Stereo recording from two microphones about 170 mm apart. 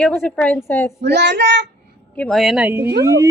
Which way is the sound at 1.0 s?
85° right.